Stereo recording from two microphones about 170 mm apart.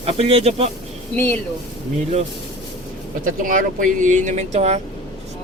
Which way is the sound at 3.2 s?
50° right (ahead or behind).